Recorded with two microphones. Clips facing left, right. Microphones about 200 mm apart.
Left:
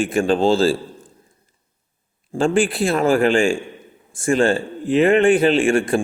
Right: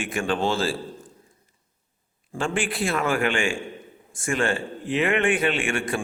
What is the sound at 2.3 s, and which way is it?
A man's voice, 30° left (ahead or behind).